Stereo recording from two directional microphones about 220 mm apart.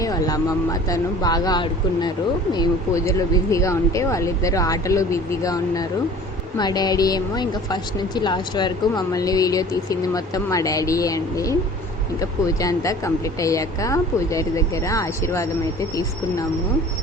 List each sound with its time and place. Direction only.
0.0 s speech: 15° left (ahead or behind)